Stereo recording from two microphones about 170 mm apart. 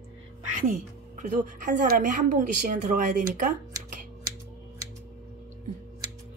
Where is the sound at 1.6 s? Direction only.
55° right (ahead or behind).